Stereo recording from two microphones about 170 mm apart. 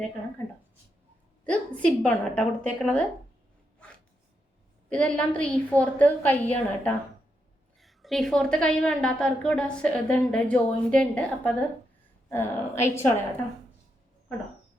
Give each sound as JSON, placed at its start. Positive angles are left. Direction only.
{"t": 1.5, "sound": "a woman's voice", "side_deg": 5}
{"t": 4.9, "sound": "a woman's voice", "side_deg": 5}